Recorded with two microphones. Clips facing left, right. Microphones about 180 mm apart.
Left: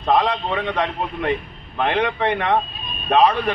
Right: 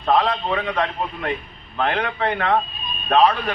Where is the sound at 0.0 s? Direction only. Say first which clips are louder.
Left 1 dB; 15° left (ahead or behind).